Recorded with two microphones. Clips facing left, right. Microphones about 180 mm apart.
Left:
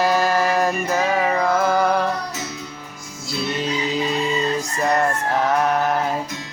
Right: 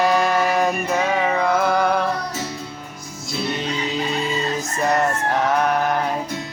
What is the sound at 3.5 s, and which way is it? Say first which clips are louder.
Music: left 2 dB; centre (ahead or behind).